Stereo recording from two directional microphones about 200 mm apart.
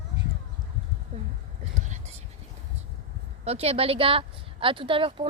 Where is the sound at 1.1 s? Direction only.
35° right (ahead or behind).